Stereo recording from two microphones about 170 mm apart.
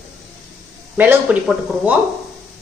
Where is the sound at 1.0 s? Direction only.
10° right (ahead or behind).